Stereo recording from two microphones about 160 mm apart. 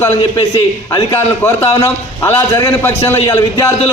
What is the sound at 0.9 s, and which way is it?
A man's voice, 20° left (ahead or behind).